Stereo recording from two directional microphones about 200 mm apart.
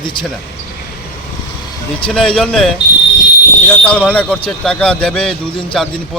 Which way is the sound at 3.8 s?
5° left (ahead or behind).